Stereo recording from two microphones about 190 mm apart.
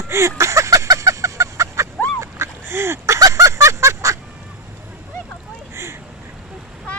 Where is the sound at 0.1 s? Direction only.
15° right (ahead or behind).